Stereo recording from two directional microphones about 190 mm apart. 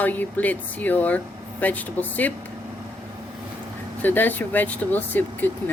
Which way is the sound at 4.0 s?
10° left (ahead or behind).